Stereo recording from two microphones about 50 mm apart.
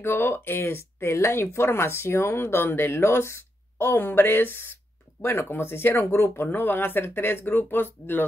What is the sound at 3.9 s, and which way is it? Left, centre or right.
Speech, left.